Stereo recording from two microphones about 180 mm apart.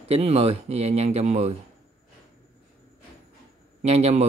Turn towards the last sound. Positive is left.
turn(degrees=-35)  # may be behind; listen again after turning